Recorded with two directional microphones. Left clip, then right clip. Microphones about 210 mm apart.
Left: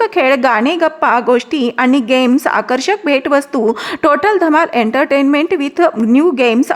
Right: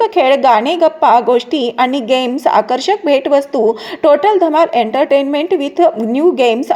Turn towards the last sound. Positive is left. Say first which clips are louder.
# even
turn(degrees=10)  # may be behind; listen again after turning